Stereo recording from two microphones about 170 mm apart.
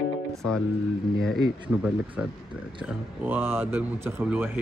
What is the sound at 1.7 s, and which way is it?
Speech, 10° right (ahead or behind).